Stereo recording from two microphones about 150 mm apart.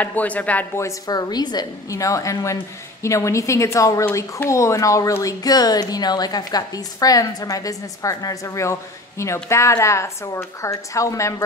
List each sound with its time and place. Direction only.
0.0 s speech: 10° left (ahead or behind)